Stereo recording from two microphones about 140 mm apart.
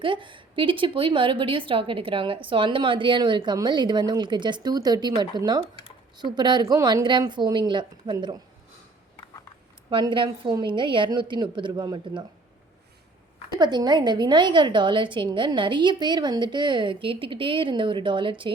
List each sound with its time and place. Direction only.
0.0 s a woman's voice: 35° right (ahead or behind)
9.9 s a woman's voice: 35° right (ahead or behind)
13.5 s a woman's voice: 30° right (ahead or behind)